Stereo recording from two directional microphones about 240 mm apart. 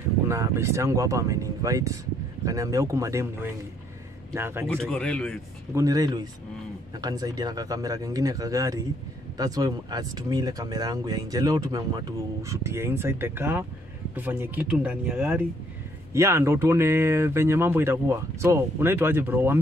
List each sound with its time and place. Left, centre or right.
0.3 s speech: centre
4.6 s speech: centre
5.8 s speech: centre